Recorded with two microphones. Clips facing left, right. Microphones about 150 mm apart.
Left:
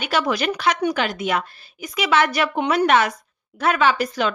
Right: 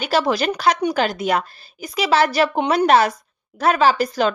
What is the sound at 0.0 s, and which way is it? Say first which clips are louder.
Speech: right 3 dB; 35° right (ahead or behind).